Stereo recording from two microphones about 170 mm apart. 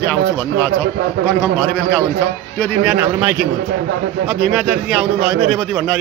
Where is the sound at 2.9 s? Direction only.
10° right (ahead or behind).